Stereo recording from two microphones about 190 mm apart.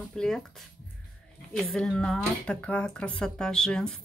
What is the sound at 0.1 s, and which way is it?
Speech, 5° left (ahead or behind).